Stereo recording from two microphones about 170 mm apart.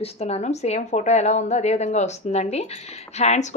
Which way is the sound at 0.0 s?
40° left (ahead or behind).